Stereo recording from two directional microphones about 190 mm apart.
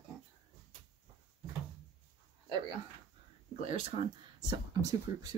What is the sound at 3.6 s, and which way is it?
Speech, 30° right (ahead or behind).